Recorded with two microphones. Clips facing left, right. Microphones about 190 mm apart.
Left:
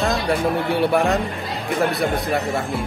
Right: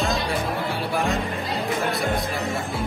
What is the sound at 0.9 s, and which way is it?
Speech, 65° left (ahead or behind).